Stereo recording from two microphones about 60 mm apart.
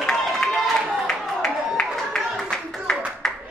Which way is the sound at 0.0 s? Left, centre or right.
Centre.